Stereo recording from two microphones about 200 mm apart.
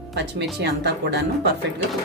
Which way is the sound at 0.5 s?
55° right (ahead or behind).